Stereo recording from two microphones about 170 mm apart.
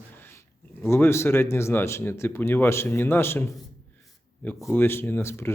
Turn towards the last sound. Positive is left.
turn(degrees=15)  # may be behind; listen again after turning